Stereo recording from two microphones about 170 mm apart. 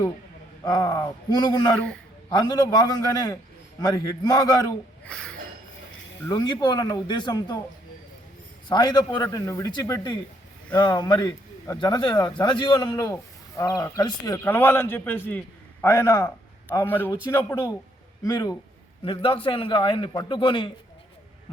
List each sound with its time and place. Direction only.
0.6 s a man's voice: 20° left (ahead or behind)
1.7 s a man's voice: 5° left (ahead or behind)
2.3 s a man's voice: 25° left (ahead or behind)
5.0 s a sound: 5° left (ahead or behind)
6.2 s a man's voice: 25° left (ahead or behind)
8.7 s a man's voice: 25° left (ahead or behind)
18.3 s a man's voice: 20° left (ahead or behind)